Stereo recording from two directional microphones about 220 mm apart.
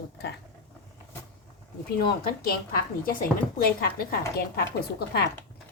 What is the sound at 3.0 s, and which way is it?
A woman's voice, 40° left (ahead or behind).